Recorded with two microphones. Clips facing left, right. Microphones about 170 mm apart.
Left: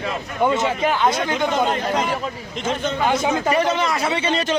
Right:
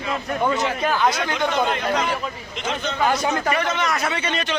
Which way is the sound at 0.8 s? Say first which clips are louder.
Left 2 dB; 25° left (ahead or behind).